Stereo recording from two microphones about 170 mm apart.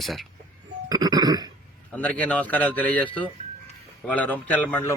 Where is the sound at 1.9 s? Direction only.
10° left (ahead or behind).